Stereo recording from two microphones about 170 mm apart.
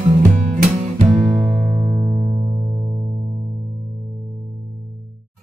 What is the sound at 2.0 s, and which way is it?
Music, 15° right (ahead or behind).